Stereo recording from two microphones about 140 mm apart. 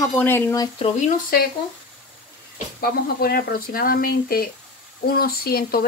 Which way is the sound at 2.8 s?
90° left.